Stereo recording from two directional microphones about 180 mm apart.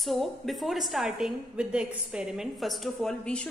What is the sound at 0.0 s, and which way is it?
A woman's voice, centre (ahead or behind).